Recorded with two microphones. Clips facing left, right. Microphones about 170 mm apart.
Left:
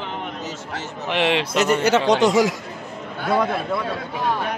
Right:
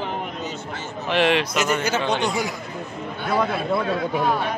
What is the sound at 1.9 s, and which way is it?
Speech, 85° left.